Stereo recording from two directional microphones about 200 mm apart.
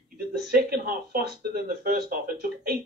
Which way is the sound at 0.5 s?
50° right (ahead or behind).